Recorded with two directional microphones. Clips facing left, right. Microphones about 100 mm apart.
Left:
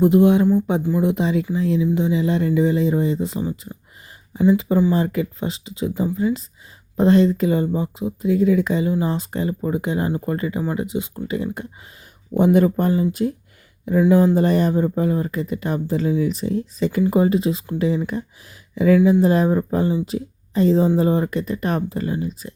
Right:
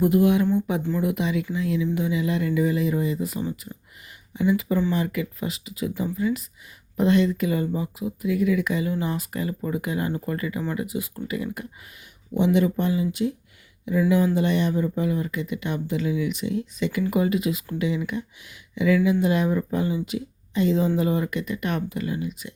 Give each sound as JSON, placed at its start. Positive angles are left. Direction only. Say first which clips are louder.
{"t": 0.0, "sound": "speech", "louder": "left 5 dB", "side_deg": 25}
{"t": 12.5, "sound": "speech", "louder": "left 5 dB", "side_deg": 45}